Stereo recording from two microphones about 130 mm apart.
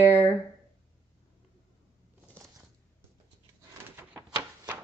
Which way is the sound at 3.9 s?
15° right (ahead or behind).